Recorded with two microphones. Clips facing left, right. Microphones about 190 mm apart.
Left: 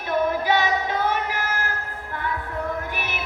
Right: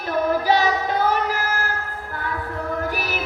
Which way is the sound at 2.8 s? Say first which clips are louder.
Right 5 dB; 35° right (ahead or behind).